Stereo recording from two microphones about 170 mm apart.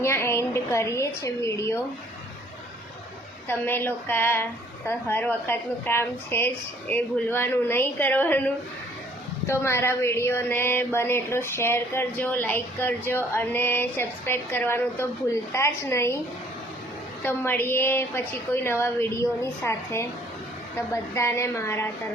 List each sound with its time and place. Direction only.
0.0 s speech: 15° left (ahead or behind)
3.5 s speech: 10° left (ahead or behind)
9.5 s speech: 15° left (ahead or behind)
17.2 s speech: 15° left (ahead or behind)